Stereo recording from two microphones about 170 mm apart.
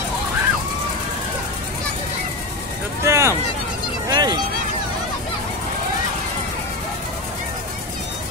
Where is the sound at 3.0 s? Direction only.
15° right (ahead or behind).